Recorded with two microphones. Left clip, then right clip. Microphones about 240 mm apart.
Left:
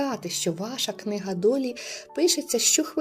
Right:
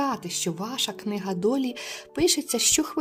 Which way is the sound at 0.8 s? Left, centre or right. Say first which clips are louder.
Even; right.